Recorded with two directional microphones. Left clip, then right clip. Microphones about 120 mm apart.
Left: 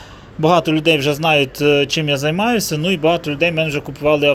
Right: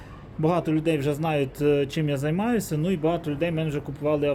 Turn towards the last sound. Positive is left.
turn(degrees=25)  # may be behind; listen again after turning